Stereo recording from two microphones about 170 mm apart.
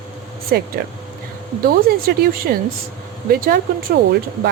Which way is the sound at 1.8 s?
60° right (ahead or behind).